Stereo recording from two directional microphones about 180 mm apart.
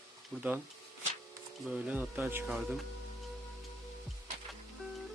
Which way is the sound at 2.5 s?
Centre (ahead or behind).